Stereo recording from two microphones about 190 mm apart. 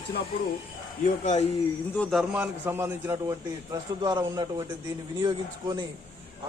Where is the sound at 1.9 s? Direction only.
5° left (ahead or behind).